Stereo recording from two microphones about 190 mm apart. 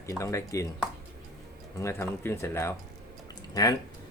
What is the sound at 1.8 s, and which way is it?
Speech, 15° left (ahead or behind).